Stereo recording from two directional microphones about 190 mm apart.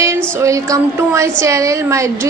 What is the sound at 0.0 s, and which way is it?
A woman's voice, 15° right (ahead or behind).